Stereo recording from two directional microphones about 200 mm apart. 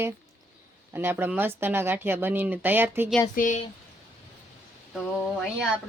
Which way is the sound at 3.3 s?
40° left (ahead or behind).